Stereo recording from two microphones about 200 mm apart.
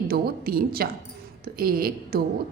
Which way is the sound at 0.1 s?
50° right (ahead or behind).